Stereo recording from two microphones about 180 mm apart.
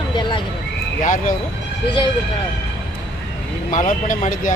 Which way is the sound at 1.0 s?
45° left (ahead or behind).